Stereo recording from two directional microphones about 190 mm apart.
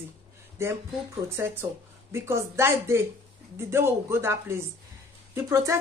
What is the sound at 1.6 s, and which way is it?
A woman's voice, 10° right (ahead or behind).